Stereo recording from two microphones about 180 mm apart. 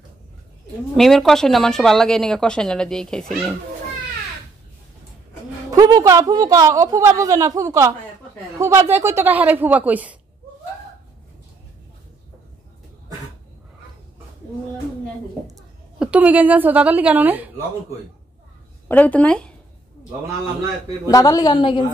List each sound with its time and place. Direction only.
0.9 s a woman's voice: centre (ahead or behind)
5.7 s a woman's voice: 20° right (ahead or behind)
16.0 s a woman's voice: 10° right (ahead or behind)
18.9 s speech: 10° left (ahead or behind)
21.1 s a woman's voice: 20° left (ahead or behind)